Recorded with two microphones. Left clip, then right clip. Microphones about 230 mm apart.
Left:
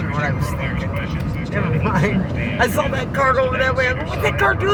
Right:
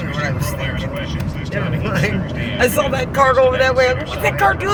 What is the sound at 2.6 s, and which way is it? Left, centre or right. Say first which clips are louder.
Speech: right 3 dB; right.